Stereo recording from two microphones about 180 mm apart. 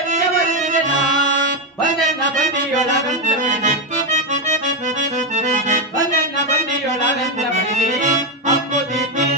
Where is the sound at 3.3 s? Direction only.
40° right (ahead or behind).